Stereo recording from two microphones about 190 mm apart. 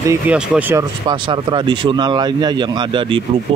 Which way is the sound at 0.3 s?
10° right (ahead or behind).